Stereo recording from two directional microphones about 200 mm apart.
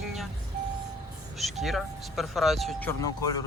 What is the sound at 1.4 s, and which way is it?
Speech, centre (ahead or behind).